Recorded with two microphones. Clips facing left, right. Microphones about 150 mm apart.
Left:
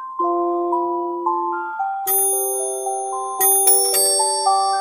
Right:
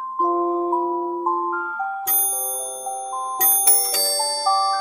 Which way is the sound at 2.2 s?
65° left (ahead or behind).